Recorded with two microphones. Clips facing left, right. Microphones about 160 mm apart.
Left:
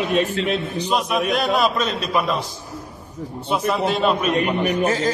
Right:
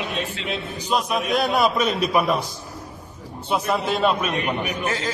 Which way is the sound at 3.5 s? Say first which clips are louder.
Left 2 dB; centre (ahead or behind).